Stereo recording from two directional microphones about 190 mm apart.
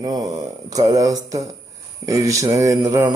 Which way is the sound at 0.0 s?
20° right (ahead or behind).